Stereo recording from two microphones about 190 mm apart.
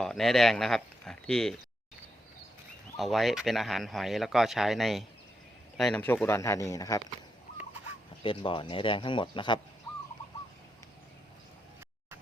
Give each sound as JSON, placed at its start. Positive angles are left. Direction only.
{"t": 0.0, "sound": "speech", "side_deg": 0}
{"t": 3.0, "sound": "speech", "side_deg": 0}
{"t": 8.2, "sound": "speech", "side_deg": 25}